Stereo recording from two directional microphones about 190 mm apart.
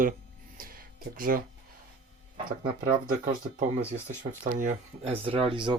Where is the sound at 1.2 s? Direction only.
50° right (ahead or behind).